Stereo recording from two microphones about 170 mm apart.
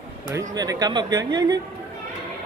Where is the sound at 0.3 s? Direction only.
20° right (ahead or behind).